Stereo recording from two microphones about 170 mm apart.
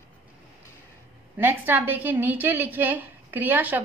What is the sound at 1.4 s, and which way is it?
A woman's voice, 10° right (ahead or behind).